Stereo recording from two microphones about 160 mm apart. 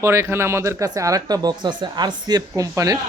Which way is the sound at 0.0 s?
15° right (ahead or behind).